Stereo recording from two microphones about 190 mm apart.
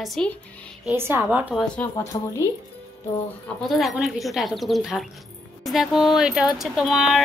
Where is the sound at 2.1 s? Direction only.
25° left (ahead or behind).